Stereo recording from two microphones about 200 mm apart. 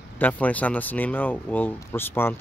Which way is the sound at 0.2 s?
10° left (ahead or behind).